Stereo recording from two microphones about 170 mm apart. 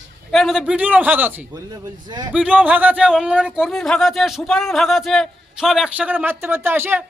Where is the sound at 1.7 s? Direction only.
25° right (ahead or behind).